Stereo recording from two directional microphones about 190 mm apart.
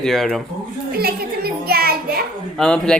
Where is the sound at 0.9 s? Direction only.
55° right (ahead or behind).